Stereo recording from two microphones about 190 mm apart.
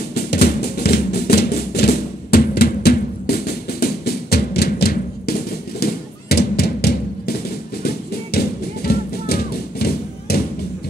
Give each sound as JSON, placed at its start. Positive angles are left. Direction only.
{"t": 0.1, "sound": "music", "side_deg": 55}